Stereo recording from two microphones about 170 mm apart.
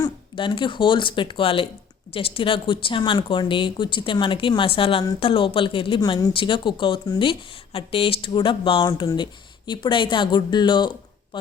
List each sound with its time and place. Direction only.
0.0 s speech: 30° left (ahead or behind)